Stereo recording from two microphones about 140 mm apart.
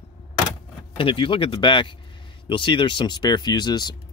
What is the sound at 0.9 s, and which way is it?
Speech, 40° left (ahead or behind).